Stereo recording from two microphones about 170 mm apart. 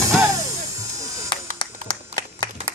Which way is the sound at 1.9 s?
25° left (ahead or behind).